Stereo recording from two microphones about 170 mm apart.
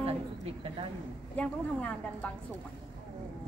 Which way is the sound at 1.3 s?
10° left (ahead or behind).